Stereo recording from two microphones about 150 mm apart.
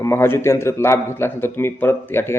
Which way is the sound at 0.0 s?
15° left (ahead or behind).